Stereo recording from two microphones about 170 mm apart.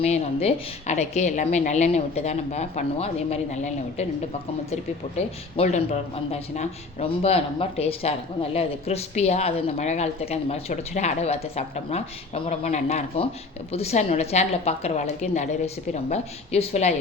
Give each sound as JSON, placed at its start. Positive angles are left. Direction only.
{"t": 0.0, "sound": "speech", "side_deg": 35}